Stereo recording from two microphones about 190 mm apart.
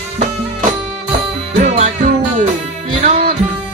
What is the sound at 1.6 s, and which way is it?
Music, 35° right (ahead or behind).